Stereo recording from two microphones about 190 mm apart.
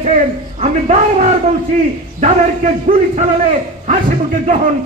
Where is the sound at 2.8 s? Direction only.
40° right (ahead or behind).